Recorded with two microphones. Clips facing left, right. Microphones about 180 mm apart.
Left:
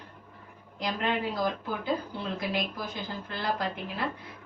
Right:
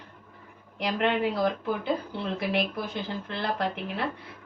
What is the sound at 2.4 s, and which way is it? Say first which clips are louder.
Speech: right 5 dB; 65° right (ahead or behind).